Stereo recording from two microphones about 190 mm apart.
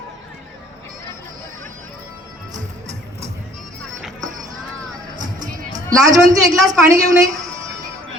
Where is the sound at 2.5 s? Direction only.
40° right (ahead or behind).